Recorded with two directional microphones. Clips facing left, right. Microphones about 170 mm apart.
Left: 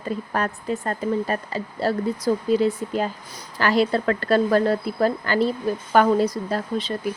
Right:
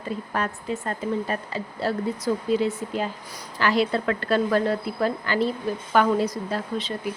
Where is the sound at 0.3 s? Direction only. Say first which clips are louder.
Left 2 dB; 45° left (ahead or behind).